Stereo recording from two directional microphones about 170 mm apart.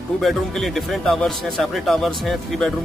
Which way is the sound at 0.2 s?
Centre (ahead or behind).